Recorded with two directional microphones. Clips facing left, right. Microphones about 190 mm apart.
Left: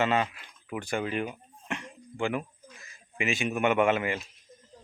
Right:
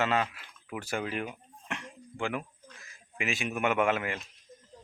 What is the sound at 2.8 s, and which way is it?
Speech, centre (ahead or behind).